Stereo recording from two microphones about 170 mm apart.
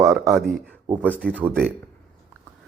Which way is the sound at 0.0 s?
20° right (ahead or behind).